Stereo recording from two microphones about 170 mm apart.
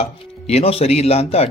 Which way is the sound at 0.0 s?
35° left (ahead or behind).